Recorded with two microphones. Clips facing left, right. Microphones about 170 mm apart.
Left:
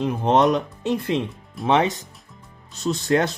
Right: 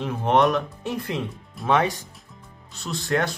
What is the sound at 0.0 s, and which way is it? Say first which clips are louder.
Speech: left 2 dB; 20° left (ahead or behind).